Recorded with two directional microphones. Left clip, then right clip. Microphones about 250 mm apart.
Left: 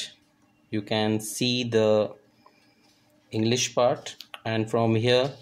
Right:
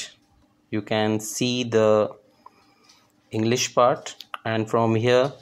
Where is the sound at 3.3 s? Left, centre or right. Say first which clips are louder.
Right 2 dB; centre.